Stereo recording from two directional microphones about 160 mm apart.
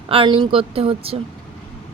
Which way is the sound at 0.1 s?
35° right (ahead or behind).